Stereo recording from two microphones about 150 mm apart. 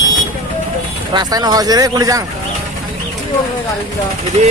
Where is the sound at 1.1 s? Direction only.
25° right (ahead or behind).